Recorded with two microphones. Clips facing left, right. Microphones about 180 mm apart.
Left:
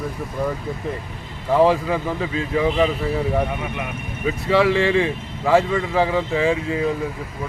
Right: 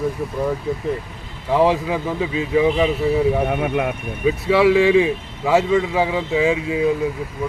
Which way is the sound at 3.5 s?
75° right (ahead or behind).